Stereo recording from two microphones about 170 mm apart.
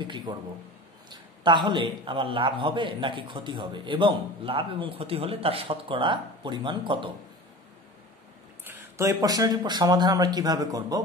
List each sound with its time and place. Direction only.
0.0 s a man's voice: 25° right (ahead or behind)
8.6 s a man's voice: 15° right (ahead or behind)